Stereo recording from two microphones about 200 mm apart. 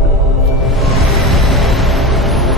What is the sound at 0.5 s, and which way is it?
Music, centre (ahead or behind).